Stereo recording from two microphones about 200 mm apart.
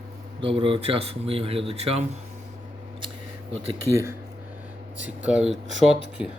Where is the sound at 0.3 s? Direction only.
25° right (ahead or behind).